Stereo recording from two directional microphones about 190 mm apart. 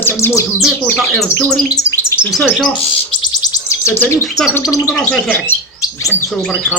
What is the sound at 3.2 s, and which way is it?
Insect, 20° left (ahead or behind).